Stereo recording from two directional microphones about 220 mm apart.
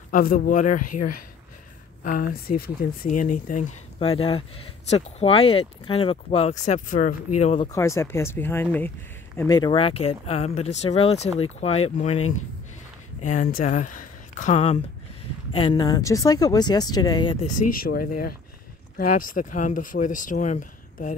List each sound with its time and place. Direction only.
0.1 s speech: 40° left (ahead or behind)
2.0 s speech: 40° left (ahead or behind)
7.6 s speech: 15° left (ahead or behind); by 12.2 s 30° left (ahead or behind)
13.2 s speech: 35° left (ahead or behind)
17.5 s speech: 40° left (ahead or behind)